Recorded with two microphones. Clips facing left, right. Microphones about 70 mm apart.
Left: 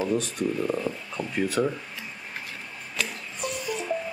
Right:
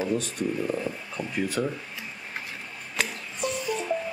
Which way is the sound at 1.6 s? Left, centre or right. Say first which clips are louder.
Left 4 dB; left.